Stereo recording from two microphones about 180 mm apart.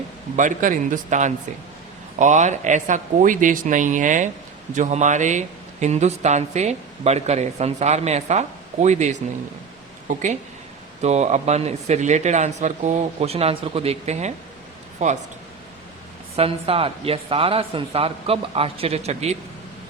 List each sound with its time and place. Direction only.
0.3 s speech: 45° right (ahead or behind)
11.0 s speech: 40° right (ahead or behind)
16.3 s speech: 35° right (ahead or behind)